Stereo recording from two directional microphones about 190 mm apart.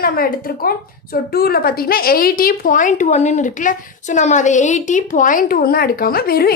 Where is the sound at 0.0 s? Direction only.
50° left (ahead or behind).